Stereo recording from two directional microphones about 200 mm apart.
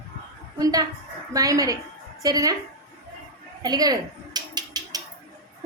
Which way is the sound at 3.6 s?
20° right (ahead or behind).